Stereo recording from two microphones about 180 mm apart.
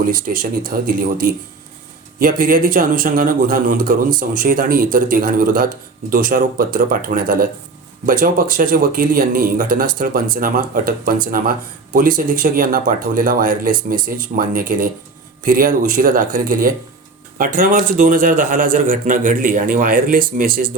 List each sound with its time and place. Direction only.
0.3 s speech: 45° right (ahead or behind)